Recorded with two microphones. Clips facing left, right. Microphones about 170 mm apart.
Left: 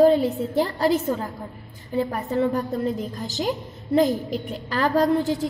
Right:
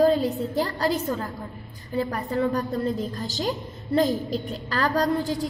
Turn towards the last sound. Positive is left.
turn(degrees=25)  # may be behind; listen again after turning